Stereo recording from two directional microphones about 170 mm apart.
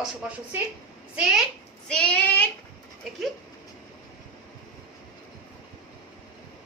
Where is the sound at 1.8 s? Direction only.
5° left (ahead or behind).